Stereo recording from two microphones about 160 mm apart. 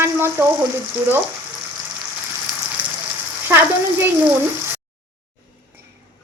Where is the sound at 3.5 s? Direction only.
15° right (ahead or behind).